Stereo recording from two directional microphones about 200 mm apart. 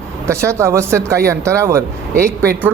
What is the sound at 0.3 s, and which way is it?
Speech, 15° right (ahead or behind).